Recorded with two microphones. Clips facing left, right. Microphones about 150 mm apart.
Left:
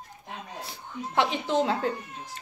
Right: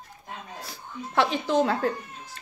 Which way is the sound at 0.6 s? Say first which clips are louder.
Left 1 dB; 20° left (ahead or behind).